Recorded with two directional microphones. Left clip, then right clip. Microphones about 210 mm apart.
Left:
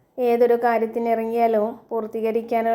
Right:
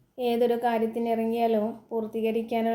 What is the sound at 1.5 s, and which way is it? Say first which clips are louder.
Speech: left 6 dB; 20° left (ahead or behind).